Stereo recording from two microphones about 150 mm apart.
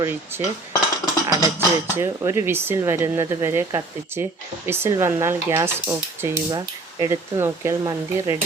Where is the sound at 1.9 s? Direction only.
20° right (ahead or behind).